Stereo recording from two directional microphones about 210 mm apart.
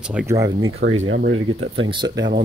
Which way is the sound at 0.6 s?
65° right (ahead or behind).